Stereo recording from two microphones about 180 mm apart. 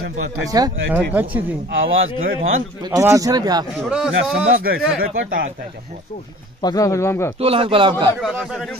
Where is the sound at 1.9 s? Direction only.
90° right.